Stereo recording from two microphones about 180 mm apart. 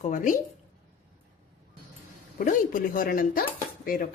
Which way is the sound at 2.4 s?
50° left (ahead or behind).